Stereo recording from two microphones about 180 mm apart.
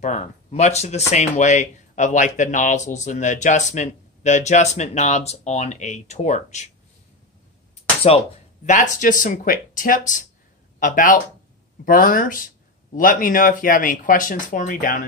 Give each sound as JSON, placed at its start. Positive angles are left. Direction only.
{"t": 0.0, "sound": "speech", "side_deg": 40}
{"t": 8.1, "sound": "speech", "side_deg": 35}